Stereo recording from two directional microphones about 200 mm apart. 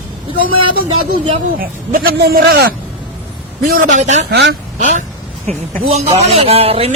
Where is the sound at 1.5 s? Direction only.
45° right (ahead or behind).